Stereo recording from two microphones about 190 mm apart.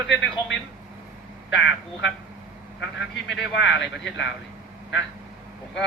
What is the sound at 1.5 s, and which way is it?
A man's voice, 70° left (ahead or behind).